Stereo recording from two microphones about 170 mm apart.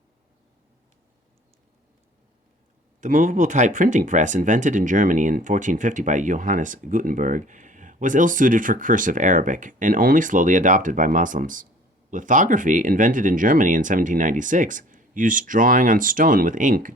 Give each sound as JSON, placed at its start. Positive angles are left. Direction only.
{"t": 3.0, "sound": "speech", "side_deg": -50}